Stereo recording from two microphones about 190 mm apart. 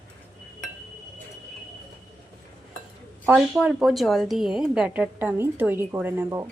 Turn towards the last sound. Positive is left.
turn(degrees=-10)  # may be behind; listen again after turning